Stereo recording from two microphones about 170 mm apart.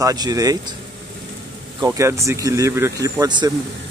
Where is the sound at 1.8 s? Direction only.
15° right (ahead or behind).